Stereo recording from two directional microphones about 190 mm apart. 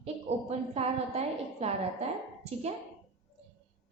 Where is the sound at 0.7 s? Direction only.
35° right (ahead or behind).